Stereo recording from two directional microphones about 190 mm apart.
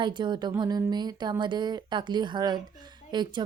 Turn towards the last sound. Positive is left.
turn(degrees=-20)  # may be behind; listen again after turning